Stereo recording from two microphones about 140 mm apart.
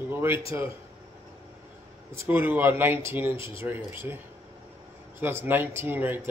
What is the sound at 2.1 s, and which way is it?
Speech, 15° right (ahead or behind).